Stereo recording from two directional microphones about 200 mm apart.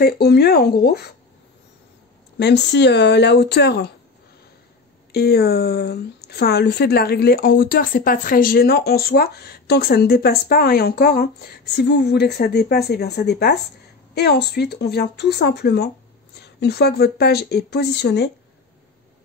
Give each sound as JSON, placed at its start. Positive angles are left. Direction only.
{"t": 0.0, "sound": "a woman's voice", "side_deg": 55}
{"t": 2.3, "sound": "speech", "side_deg": 55}
{"t": 5.1, "sound": "a woman's voice", "side_deg": 50}